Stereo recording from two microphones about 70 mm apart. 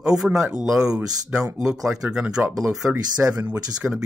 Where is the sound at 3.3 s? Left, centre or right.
Right.